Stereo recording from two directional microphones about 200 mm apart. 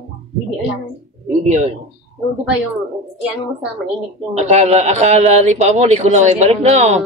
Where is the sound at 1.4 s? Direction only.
35° right (ahead or behind).